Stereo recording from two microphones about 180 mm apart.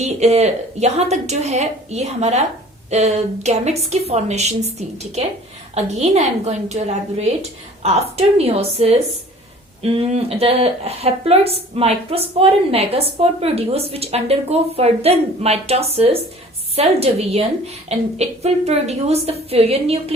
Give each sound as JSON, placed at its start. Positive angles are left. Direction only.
{"t": 0.0, "sound": "a woman's voice", "side_deg": -40}